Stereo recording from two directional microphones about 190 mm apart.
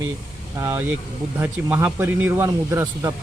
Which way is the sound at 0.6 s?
15° right (ahead or behind).